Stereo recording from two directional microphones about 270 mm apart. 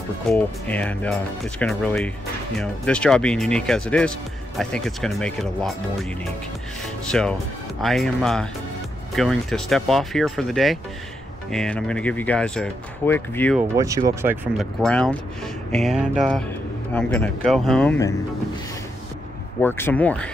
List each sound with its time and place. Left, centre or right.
0.3 s speech: centre
7.1 s speech: centre
13.6 s speech: centre
19.6 s speech: centre